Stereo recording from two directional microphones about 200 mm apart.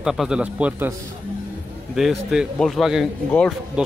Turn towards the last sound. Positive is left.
turn(degrees=0)  # may be behind; listen again after turning